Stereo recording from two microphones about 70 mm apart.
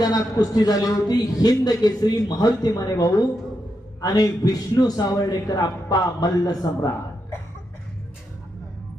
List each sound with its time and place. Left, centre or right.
0.0 s a man's voice: left